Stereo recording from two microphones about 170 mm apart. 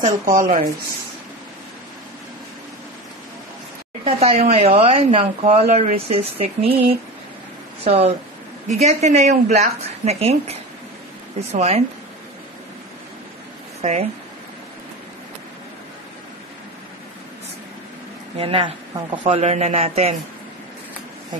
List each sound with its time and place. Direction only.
0.0 s speech: 50° right (ahead or behind)
4.0 s a woman's voice: 40° right (ahead or behind)
13.7 s speech: 40° right (ahead or behind)
18.4 s a woman's voice: 35° right (ahead or behind)